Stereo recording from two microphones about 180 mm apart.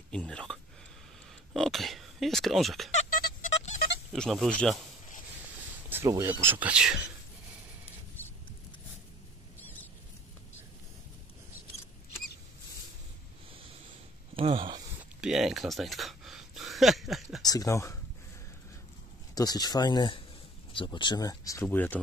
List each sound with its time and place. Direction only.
0.1 s speech: 5° left (ahead or behind)
2.9 s music: 45° left (ahead or behind)
4.1 s speech: centre (ahead or behind)
5.9 s speech: 15° right (ahead or behind)
9.6 s rodents: 10° left (ahead or behind)
14.3 s speech: 30° right (ahead or behind)
15.1 s a sound: 5° right (ahead or behind)
17.4 s speech: 20° left (ahead or behind)
19.3 s speech: 20° left (ahead or behind)